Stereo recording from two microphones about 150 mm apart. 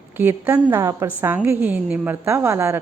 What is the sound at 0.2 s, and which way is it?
A woman's voice, 15° right (ahead or behind).